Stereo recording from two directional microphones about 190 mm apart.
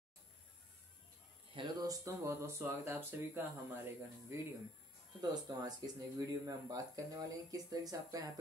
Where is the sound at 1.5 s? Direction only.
25° right (ahead or behind).